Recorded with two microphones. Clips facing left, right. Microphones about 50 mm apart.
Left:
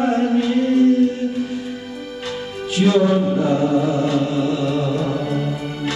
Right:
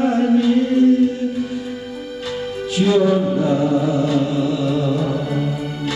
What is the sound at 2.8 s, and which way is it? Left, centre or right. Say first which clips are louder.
Chant: even; centre.